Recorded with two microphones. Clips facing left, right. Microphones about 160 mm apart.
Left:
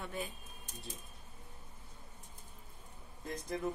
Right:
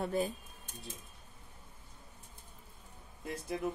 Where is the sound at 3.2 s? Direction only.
10° right (ahead or behind).